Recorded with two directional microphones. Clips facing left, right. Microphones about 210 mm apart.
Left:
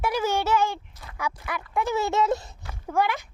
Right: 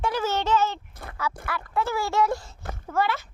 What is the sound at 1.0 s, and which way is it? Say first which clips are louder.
Speech: right 5 dB; 55° right (ahead or behind).